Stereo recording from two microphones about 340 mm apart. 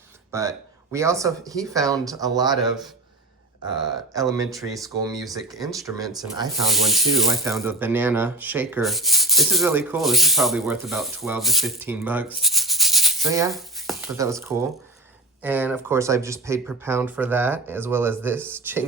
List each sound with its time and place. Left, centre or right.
0.3 s speech: centre
3.8 s speech: centre